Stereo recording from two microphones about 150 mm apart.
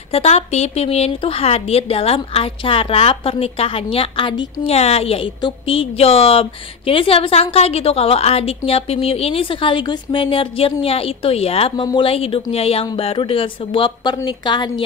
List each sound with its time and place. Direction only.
0.1 s a woman's voice: 45° left (ahead or behind)